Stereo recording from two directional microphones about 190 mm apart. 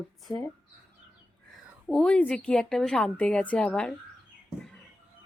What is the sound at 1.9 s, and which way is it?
A woman's voice, 5° left (ahead or behind).